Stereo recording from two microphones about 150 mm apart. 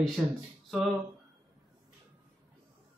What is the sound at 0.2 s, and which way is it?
Speech, centre (ahead or behind).